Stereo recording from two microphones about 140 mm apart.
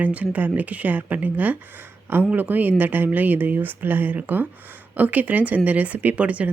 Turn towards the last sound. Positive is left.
turn(degrees=-10)  # may be behind; listen again after turning